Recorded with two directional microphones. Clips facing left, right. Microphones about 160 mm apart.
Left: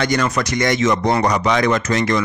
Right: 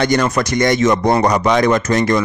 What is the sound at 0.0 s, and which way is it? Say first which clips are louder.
Speech: right 3 dB; 30° right (ahead or behind).